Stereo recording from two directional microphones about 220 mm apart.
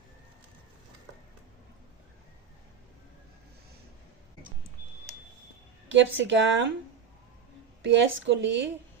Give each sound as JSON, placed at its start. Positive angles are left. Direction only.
{"t": 5.9, "sound": "speech", "side_deg": -55}
{"t": 7.9, "sound": "speech", "side_deg": -55}